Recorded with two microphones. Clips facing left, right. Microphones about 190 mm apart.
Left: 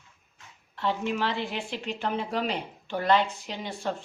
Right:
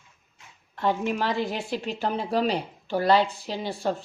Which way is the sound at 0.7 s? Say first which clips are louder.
Right 3 dB; 45° right (ahead or behind).